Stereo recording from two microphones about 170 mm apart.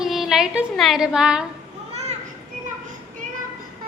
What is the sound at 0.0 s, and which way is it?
Speech, centre (ahead or behind).